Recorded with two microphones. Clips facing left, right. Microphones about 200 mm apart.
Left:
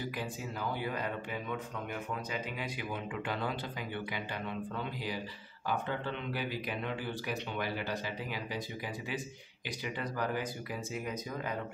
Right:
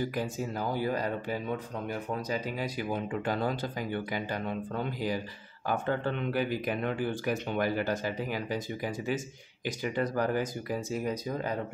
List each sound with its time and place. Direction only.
0.1 s speech: 45° right (ahead or behind)